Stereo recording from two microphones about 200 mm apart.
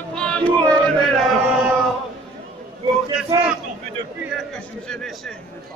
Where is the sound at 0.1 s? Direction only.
5° left (ahead or behind).